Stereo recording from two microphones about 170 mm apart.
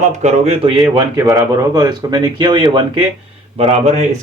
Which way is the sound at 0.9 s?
20° right (ahead or behind).